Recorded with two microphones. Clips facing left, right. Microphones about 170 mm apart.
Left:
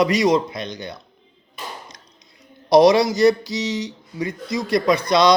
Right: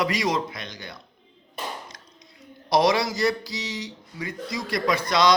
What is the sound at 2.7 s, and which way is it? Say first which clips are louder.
Speech: left 8 dB; 20° left (ahead or behind).